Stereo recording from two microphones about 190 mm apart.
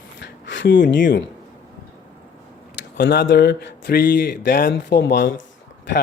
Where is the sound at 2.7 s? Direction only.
65° left (ahead or behind).